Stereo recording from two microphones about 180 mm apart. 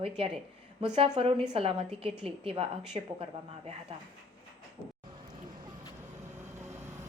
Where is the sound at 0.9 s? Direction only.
35° right (ahead or behind).